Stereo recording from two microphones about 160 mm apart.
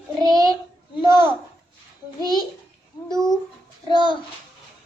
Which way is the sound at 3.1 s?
5° left (ahead or behind).